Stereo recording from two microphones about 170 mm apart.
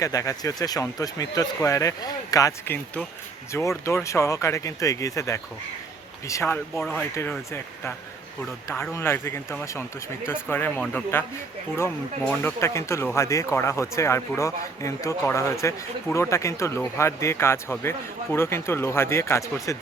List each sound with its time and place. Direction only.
0.0 s speech: 20° left (ahead or behind)
12.3 s speech: 10° left (ahead or behind)